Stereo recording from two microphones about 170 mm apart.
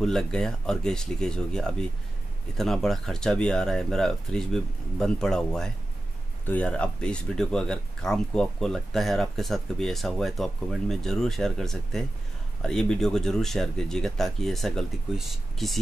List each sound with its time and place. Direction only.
0.0 s speech: 5° left (ahead or behind)